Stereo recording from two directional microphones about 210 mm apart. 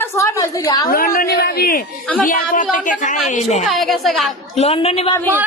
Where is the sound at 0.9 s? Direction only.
40° left (ahead or behind).